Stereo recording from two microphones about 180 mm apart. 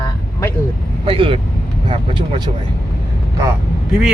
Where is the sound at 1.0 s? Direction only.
30° right (ahead or behind).